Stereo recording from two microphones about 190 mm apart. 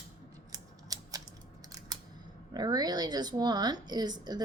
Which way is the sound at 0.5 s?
20° right (ahead or behind).